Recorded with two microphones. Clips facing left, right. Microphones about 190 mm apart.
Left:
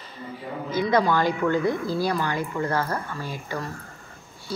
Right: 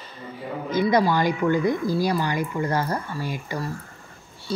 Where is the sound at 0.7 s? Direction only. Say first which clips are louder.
Right 1 dB; 10° right (ahead or behind).